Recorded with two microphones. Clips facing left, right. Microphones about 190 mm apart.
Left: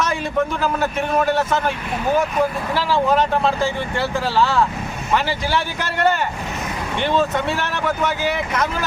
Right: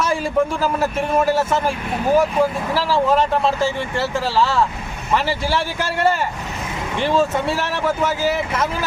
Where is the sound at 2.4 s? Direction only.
30° right (ahead or behind).